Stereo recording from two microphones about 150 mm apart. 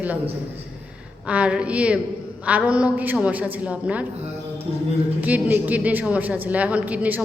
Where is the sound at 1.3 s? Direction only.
10° right (ahead or behind).